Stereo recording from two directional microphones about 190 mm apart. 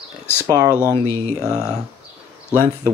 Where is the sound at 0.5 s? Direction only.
20° right (ahead or behind).